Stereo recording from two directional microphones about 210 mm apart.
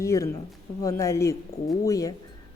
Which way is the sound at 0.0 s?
15° left (ahead or behind).